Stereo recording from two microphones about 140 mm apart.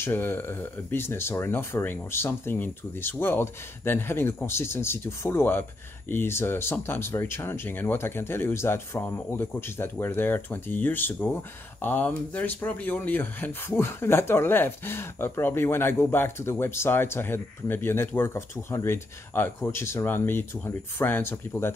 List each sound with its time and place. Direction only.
0.0 s speech: 15° left (ahead or behind)